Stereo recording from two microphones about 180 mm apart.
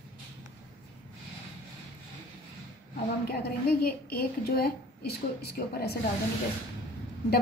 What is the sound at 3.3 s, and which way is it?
A woman's voice, 55° left (ahead or behind).